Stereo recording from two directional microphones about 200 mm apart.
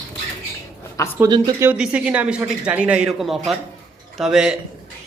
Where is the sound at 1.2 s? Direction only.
15° right (ahead or behind).